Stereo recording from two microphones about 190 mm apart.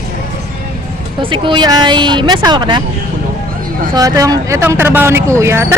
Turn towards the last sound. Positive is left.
turn(degrees=-15)  # may be behind; listen again after turning